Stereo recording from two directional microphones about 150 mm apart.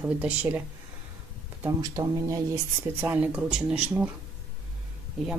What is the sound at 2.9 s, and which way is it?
A woman's voice, 10° right (ahead or behind).